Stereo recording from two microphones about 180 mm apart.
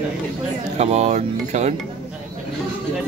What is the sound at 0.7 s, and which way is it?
Speech, 40° right (ahead or behind).